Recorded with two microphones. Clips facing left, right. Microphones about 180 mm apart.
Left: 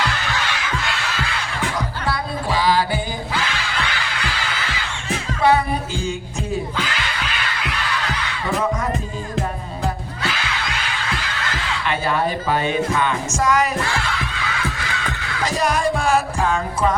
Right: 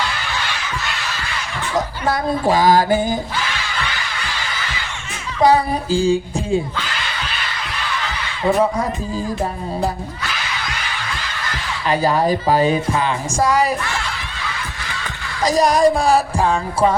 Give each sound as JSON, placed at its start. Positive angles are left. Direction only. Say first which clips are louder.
{"t": 1.7, "sound": "music", "louder": "right 9 dB", "side_deg": -45}
{"t": 5.4, "sound": "speech", "louder": "right 3 dB", "side_deg": -35}
{"t": 11.9, "sound": "speech", "louder": "right 5 dB", "side_deg": -40}
{"t": 15.4, "sound": "speech", "louder": "right 7 dB", "side_deg": -35}